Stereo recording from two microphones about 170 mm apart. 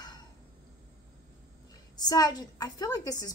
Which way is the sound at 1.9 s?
25° left (ahead or behind).